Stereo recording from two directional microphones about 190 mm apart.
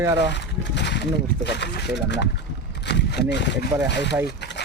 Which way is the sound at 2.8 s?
60° left (ahead or behind).